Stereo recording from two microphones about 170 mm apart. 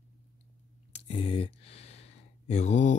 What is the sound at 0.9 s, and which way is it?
Speech, 30° left (ahead or behind).